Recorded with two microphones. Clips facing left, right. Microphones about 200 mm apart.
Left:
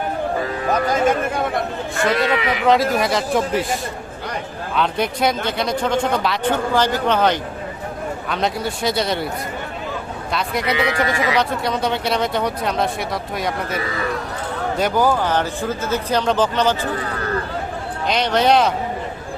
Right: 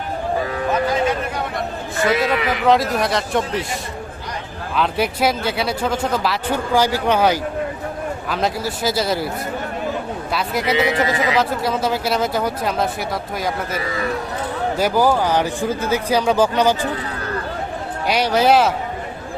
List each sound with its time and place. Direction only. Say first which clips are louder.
2.0 s speech: right 1 dB; centre (ahead or behind)
10.3 s speech: right 1 dB; 5° right (ahead or behind)
10.8 s speech: right 2 dB; 25° right (ahead or behind)
11.3 s speech: right 1 dB; 5° right (ahead or behind)
14.8 s speech: right 1 dB; 10° right (ahead or behind)
18.1 s speech: right 1 dB; 10° right (ahead or behind)